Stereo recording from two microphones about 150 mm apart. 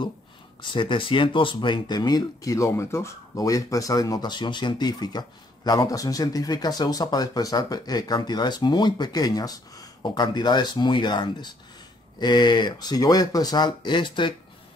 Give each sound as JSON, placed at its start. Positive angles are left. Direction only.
{"t": 0.6, "sound": "speech", "side_deg": 35}